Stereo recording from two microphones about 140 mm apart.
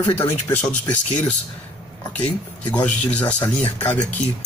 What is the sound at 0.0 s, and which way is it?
Speech, 15° left (ahead or behind).